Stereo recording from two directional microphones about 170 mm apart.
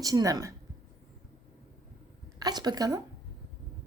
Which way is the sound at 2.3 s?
25° right (ahead or behind).